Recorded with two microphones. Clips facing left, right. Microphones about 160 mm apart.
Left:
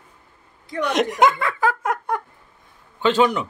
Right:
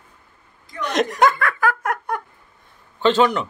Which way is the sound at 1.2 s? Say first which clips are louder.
Even; 20° left (ahead or behind).